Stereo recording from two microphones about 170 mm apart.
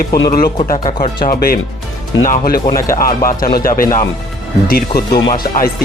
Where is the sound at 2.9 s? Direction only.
55° left (ahead or behind).